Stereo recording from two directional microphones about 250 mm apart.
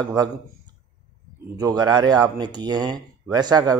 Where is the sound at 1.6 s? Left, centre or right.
Centre.